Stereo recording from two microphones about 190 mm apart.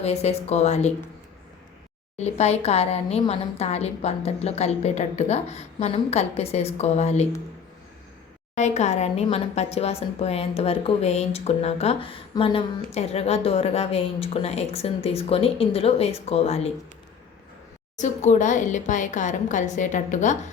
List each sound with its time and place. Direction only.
0.0 s a woman's voice: 35° left (ahead or behind)
2.1 s a woman's voice: 35° left (ahead or behind)
8.5 s a woman's voice: 35° left (ahead or behind)
17.9 s a woman's voice: 40° left (ahead or behind)